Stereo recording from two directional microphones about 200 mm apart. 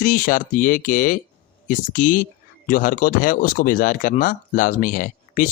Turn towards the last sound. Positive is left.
turn(degrees=45)  # may be behind; listen again after turning